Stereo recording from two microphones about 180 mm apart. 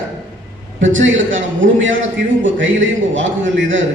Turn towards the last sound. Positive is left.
turn(degrees=-90)